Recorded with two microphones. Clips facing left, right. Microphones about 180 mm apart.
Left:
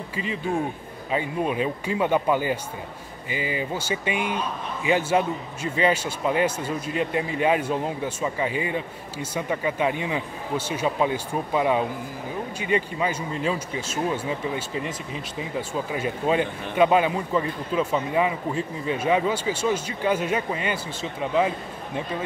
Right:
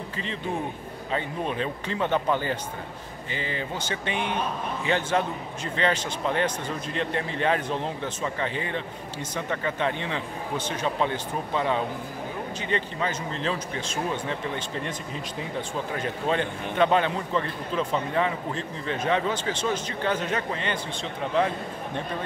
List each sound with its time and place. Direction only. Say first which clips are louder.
0.1 s a man's voice: left 5 dB; 10° left (ahead or behind)